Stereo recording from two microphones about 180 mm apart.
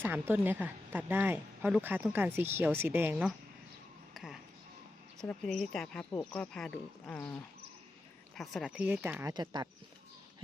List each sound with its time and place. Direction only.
0.0 s speech: 10° right (ahead or behind)
4.1 s music: centre (ahead or behind)
5.2 s speech: 5° left (ahead or behind)
9.3 s speech: 25° right (ahead or behind)